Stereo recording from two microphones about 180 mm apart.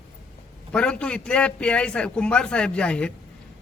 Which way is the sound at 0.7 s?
5° left (ahead or behind).